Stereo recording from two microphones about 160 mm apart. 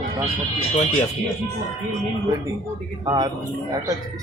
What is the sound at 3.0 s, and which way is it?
Speech, 25° right (ahead or behind).